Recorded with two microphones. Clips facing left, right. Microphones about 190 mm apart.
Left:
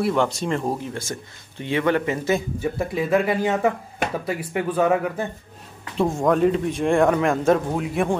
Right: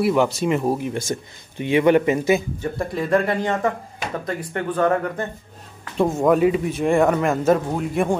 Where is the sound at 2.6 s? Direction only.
5° left (ahead or behind).